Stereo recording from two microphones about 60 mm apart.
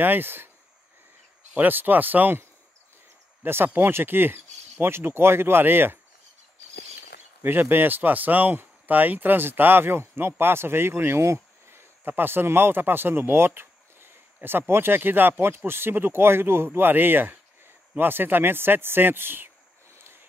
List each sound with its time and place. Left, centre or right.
0.0 s speech: right
1.6 s speech: right
3.4 s speech: right
7.4 s speech: right